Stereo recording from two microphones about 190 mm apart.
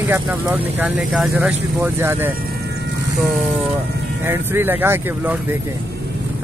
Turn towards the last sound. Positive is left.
turn(degrees=-10)  # may be behind; listen again after turning